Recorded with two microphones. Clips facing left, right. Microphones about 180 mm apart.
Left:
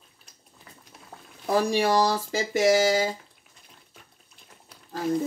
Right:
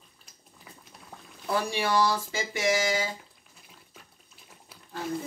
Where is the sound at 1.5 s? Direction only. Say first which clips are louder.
Left 5 dB; 40° left (ahead or behind).